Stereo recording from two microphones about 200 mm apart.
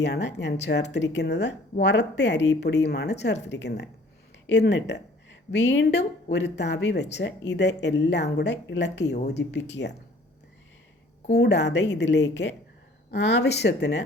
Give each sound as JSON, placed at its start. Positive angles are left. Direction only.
{"t": 0.0, "sound": "speech", "side_deg": 60}
{"t": 11.3, "sound": "speech", "side_deg": 60}